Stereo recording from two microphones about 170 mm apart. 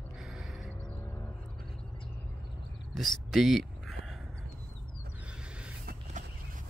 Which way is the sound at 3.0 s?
Centre (ahead or behind).